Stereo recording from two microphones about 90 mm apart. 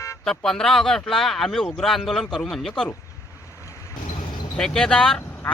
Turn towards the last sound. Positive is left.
turn(degrees=10)  # may be behind; listen again after turning